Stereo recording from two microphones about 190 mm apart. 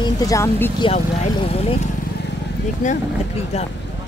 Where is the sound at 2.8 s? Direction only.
40° left (ahead or behind).